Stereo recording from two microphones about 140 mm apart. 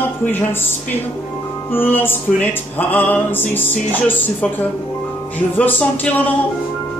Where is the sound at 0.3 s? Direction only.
15° left (ahead or behind).